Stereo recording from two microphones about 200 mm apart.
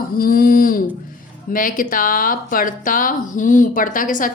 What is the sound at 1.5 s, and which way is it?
A woman's voice, 45° left (ahead or behind).